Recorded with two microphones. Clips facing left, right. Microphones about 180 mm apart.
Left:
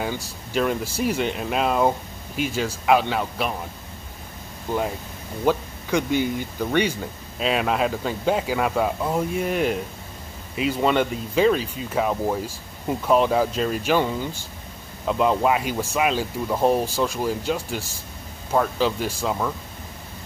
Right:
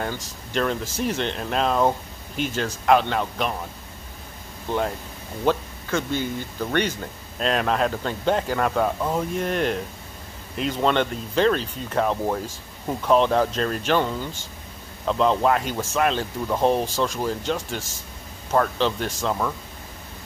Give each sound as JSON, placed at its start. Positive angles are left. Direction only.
{"t": 0.0, "sound": "speech", "side_deg": 10}
{"t": 5.4, "sound": "speech", "side_deg": 10}